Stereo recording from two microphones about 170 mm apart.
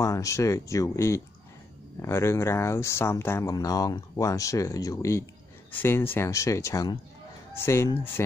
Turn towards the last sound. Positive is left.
turn(degrees=15)  # may be behind; listen again after turning